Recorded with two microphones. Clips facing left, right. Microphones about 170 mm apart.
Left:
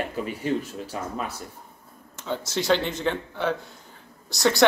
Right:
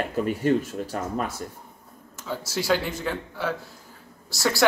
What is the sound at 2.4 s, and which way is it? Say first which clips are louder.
Speech: left 1 dB; 5° right (ahead or behind).